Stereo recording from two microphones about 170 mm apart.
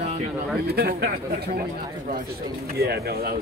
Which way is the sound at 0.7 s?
65° right (ahead or behind).